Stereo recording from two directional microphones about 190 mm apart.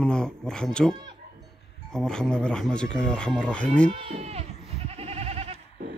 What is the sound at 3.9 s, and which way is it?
Speech, 30° right (ahead or behind).